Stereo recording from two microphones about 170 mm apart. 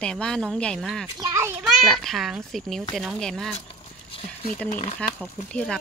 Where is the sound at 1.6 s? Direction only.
Centre (ahead or behind).